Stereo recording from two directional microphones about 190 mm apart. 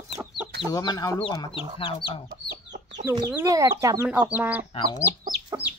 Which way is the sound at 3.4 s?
15° right (ahead or behind).